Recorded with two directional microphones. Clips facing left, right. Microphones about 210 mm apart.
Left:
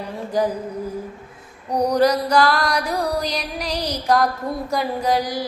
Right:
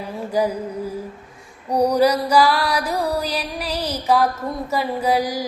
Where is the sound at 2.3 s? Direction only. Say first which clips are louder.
Right 1 dB; 10° right (ahead or behind).